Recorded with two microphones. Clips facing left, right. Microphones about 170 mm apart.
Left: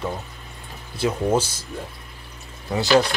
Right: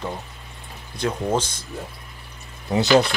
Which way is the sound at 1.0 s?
5° left (ahead or behind).